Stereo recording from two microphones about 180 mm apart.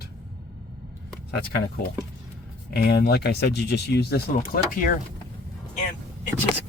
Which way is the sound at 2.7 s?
65° left (ahead or behind).